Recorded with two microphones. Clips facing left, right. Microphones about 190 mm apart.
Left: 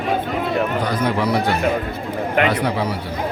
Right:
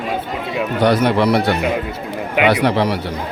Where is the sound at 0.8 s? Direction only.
75° right (ahead or behind).